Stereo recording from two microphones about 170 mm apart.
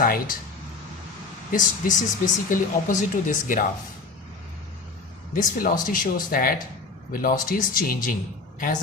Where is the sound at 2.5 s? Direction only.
50° left (ahead or behind).